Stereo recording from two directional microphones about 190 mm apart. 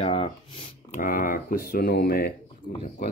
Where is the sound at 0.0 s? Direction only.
30° left (ahead or behind).